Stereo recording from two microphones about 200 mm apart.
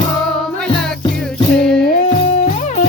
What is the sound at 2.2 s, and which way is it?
Music, 35° left (ahead or behind).